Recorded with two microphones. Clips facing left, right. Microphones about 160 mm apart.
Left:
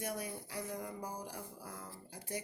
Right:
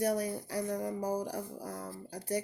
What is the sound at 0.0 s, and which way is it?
Speech, 40° right (ahead or behind).